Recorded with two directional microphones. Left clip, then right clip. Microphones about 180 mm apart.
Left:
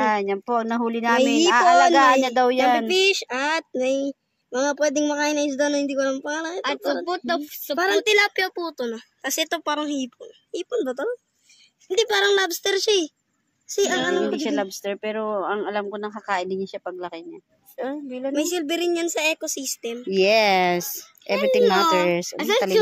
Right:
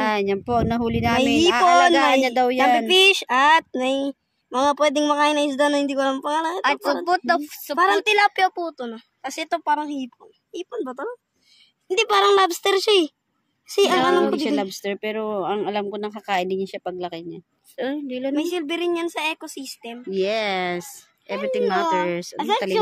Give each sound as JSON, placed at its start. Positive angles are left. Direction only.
{"t": 0.0, "sound": "speech", "side_deg": -15}
{"t": 2.9, "sound": "speech", "side_deg": -70}
{"t": 6.6, "sound": "speech", "side_deg": -50}
{"t": 8.6, "sound": "speech", "side_deg": -10}
{"t": 11.9, "sound": "speech", "side_deg": -60}
{"t": 14.4, "sound": "speech", "side_deg": -10}
{"t": 17.7, "sound": "a woman's voice", "side_deg": -30}
{"t": 18.3, "sound": "a woman's voice", "side_deg": -20}
{"t": 20.1, "sound": "a child's voice", "side_deg": 15}